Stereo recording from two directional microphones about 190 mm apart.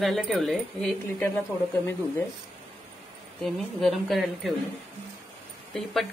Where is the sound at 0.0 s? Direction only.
Centre (ahead or behind).